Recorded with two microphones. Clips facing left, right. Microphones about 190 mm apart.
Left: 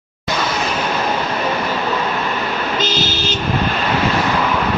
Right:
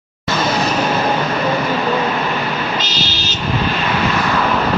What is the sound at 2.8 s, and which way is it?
Vehicle, 50° left (ahead or behind).